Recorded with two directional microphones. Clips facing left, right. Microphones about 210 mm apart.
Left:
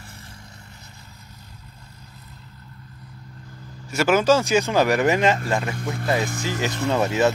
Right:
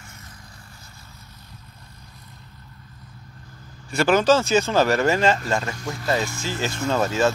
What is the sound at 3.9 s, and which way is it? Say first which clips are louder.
Speech: even; 5° left (ahead or behind).